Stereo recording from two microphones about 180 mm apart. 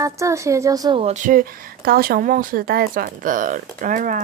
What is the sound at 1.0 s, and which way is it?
A woman's voice, 45° right (ahead or behind).